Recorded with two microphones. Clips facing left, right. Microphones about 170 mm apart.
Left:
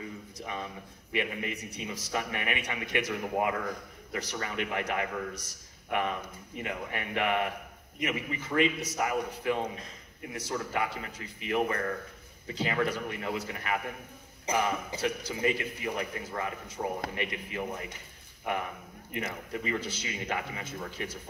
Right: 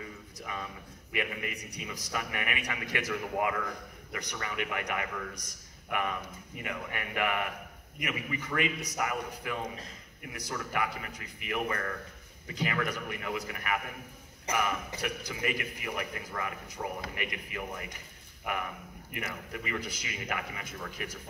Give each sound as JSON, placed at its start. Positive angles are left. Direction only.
{"t": 0.4, "sound": "a man's voice", "side_deg": 25}